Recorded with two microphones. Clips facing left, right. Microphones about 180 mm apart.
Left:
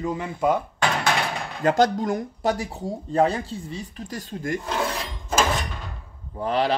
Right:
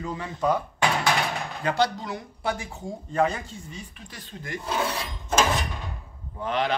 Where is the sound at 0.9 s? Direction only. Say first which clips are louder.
Left 1 dB; centre (ahead or behind).